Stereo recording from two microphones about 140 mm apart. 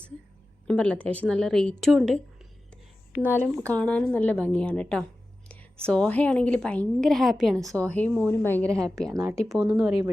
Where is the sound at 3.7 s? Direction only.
10° left (ahead or behind).